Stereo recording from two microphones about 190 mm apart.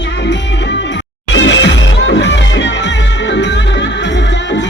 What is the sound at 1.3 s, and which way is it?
Music, 75° left (ahead or behind).